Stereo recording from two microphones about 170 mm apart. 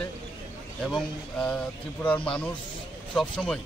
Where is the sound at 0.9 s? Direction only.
5° left (ahead or behind).